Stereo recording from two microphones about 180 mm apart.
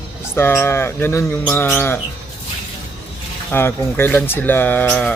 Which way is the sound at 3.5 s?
10° left (ahead or behind).